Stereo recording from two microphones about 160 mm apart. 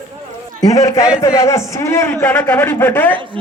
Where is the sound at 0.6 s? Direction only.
20° left (ahead or behind).